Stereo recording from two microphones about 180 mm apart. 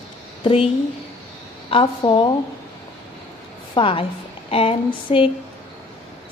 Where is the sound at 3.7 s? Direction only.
30° left (ahead or behind).